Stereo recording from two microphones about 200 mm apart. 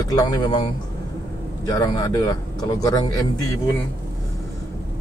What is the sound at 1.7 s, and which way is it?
Speech, 20° left (ahead or behind).